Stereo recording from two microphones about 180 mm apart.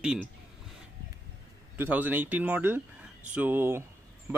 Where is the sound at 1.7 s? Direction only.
10° right (ahead or behind).